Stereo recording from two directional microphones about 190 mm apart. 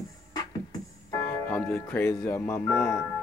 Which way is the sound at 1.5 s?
10° left (ahead or behind).